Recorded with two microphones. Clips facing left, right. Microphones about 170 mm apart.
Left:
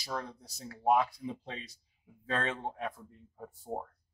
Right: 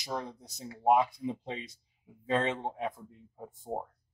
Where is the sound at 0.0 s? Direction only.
20° right (ahead or behind).